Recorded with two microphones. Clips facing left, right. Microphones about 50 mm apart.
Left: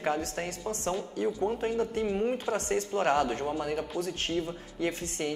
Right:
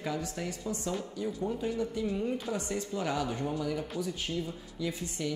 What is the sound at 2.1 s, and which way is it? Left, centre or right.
Speech, left.